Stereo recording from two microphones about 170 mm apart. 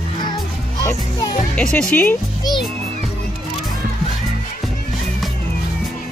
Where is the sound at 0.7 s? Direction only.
25° left (ahead or behind).